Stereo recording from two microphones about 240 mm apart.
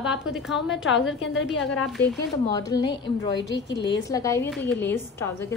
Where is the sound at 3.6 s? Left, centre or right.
Left.